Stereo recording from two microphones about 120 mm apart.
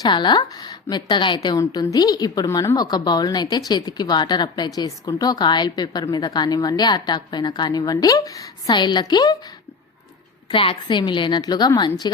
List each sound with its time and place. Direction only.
0.0 s a woman's voice: 40° left (ahead or behind)
10.5 s a woman's voice: 45° left (ahead or behind)